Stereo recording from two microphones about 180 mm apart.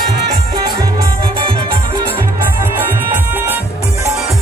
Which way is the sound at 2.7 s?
10° right (ahead or behind).